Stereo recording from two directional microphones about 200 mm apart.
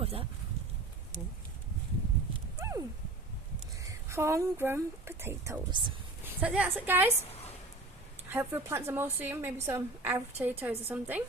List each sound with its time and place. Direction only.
0.0 s a sound: 30° right (ahead or behind)
2.6 s horse: 15° right (ahead or behind)
3.8 s speech: 15° right (ahead or behind)
5.7 s speech: 25° right (ahead or behind)
6.4 s a woman's voice: 5° right (ahead or behind)
8.3 s a woman's voice: 10° right (ahead or behind)